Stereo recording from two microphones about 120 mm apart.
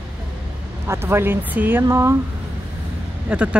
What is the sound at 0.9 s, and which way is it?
Speech, 20° right (ahead or behind).